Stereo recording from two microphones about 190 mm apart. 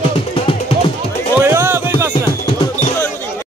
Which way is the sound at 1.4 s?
10° right (ahead or behind).